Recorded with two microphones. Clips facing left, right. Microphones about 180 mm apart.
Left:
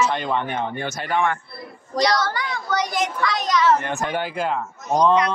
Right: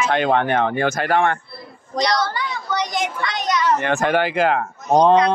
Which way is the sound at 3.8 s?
90° right.